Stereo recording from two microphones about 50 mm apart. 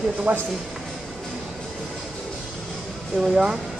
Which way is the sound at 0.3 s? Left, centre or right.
Right.